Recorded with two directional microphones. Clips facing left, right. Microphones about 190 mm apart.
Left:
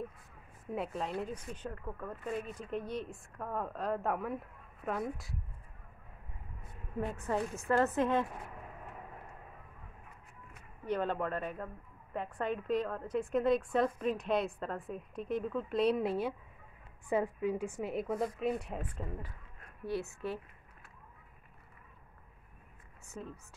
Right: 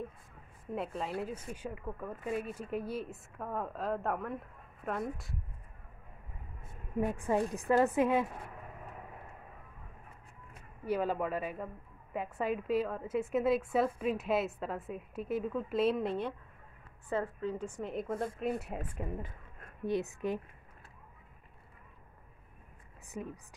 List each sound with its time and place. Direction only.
0.7 s a woman's voice: centre (ahead or behind)
7.0 s a woman's voice: 15° right (ahead or behind)
10.9 s a woman's voice: 5° right (ahead or behind)
23.1 s a woman's voice: 15° right (ahead or behind)